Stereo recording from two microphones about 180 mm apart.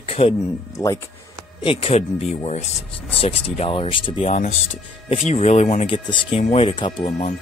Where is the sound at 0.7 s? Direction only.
15° left (ahead or behind).